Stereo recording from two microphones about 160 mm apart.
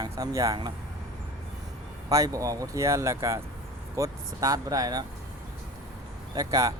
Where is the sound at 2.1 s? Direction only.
20° right (ahead or behind).